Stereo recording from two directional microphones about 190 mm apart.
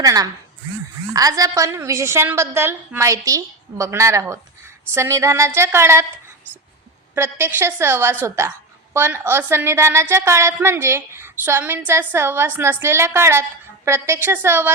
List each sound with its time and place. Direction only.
0.0 s a woman's voice: 20° right (ahead or behind)
7.2 s a woman's voice: 10° right (ahead or behind)